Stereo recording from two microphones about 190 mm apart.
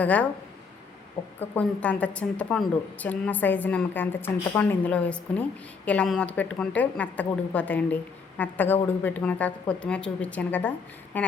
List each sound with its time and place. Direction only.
0.0 s a woman's voice: 10° left (ahead or behind)
1.2 s a woman's voice: 25° left (ahead or behind)
1.5 s a woman's voice: 5° left (ahead or behind)